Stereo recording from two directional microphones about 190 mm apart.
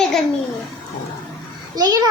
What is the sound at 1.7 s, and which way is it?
Speech, 20° right (ahead or behind).